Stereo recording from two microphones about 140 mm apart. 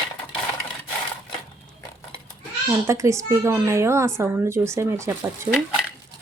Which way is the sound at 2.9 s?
20° right (ahead or behind).